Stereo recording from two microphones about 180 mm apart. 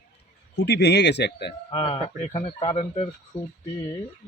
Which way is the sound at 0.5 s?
70° left (ahead or behind).